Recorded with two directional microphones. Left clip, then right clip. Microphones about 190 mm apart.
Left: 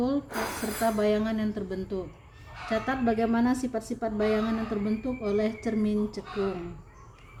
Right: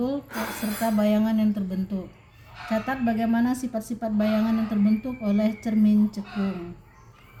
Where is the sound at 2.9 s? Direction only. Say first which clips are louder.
Even; 60° right (ahead or behind).